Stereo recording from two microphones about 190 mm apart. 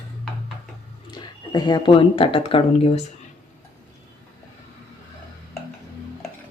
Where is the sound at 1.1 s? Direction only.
20° left (ahead or behind).